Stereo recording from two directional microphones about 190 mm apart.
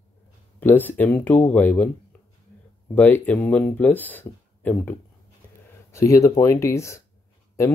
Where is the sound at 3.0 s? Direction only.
10° left (ahead or behind).